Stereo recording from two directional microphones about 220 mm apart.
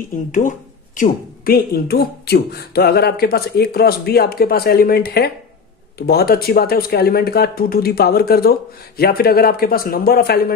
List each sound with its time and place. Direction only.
0.3 s speech: 35° left (ahead or behind)